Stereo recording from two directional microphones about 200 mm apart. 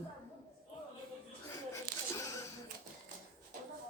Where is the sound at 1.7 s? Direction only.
15° left (ahead or behind).